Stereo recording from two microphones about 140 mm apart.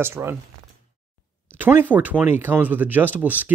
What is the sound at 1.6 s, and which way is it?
Speech, 15° right (ahead or behind).